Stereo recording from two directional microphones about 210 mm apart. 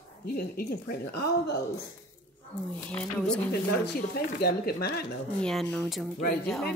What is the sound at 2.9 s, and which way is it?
Speech, 5° left (ahead or behind).